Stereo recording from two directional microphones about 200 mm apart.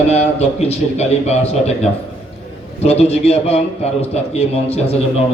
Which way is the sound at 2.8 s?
30° left (ahead or behind).